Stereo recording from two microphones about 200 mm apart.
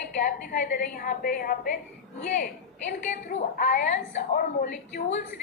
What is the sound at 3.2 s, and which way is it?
A woman's voice, 40° left (ahead or behind).